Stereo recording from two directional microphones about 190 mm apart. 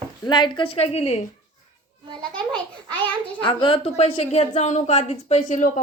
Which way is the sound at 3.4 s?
25° left (ahead or behind).